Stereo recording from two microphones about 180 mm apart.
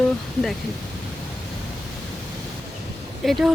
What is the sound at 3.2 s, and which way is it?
Speech, centre (ahead or behind).